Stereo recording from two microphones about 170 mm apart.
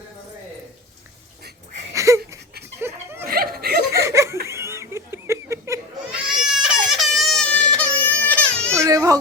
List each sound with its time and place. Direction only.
1.9 s a sound: 20° right (ahead or behind)
2.8 s chuckle: 15° right (ahead or behind)
3.2 s chuckle: 60° right (ahead or behind)
3.9 s laughter: 15° right (ahead or behind)
6.1 s goat: 5° right (ahead or behind)
6.9 s baby cry: centre (ahead or behind)
8.7 s baby cry: 15° right (ahead or behind)